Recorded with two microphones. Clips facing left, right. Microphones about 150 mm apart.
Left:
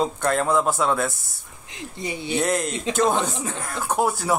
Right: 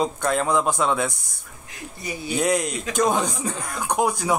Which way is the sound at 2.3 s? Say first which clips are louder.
Right 1 dB; centre (ahead or behind).